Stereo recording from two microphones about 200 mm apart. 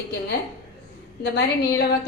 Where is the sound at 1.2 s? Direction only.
55° left (ahead or behind).